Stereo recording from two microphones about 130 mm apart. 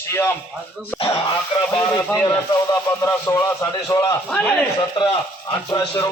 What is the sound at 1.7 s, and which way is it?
Speech, 30° left (ahead or behind).